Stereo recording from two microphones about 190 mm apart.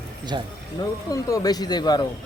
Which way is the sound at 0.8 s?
20° left (ahead or behind).